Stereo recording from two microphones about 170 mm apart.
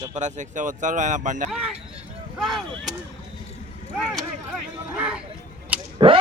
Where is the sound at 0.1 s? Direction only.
45° right (ahead or behind).